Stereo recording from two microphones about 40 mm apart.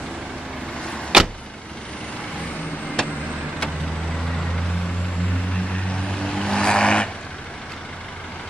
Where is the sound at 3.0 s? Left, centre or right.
Centre.